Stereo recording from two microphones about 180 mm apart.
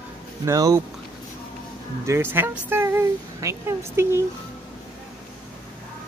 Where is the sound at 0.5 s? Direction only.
15° right (ahead or behind).